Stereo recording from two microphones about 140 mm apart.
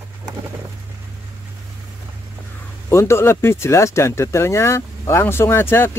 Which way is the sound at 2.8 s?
20° left (ahead or behind).